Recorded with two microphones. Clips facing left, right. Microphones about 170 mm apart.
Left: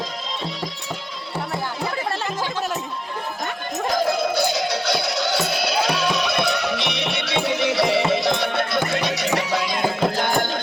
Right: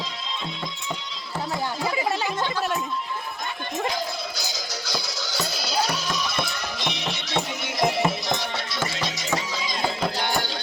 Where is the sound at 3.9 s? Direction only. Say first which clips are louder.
Left 10 dB; 55° left (ahead or behind).